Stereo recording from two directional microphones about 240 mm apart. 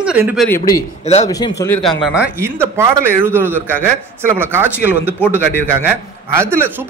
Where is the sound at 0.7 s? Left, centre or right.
Left.